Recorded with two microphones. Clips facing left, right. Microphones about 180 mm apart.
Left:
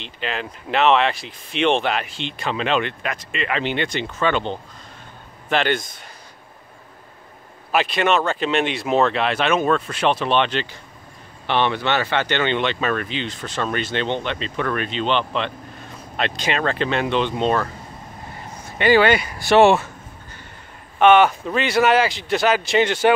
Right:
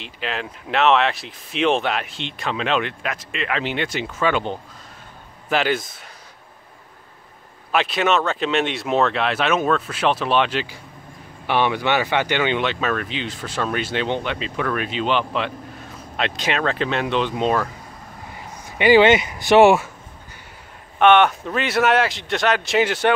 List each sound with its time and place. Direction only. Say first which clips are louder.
0.0 s speech: even; centre (ahead or behind)
7.7 s speech: left 1 dB; centre (ahead or behind)
18.7 s speech: right 2 dB; 15° right (ahead or behind)
21.0 s speech: left 1 dB; centre (ahead or behind)